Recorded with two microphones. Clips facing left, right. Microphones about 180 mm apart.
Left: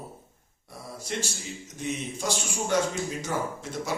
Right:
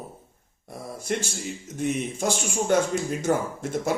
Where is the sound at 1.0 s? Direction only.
55° right (ahead or behind).